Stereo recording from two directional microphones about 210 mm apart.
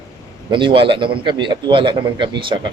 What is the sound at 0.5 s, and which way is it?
A man's voice, 25° right (ahead or behind).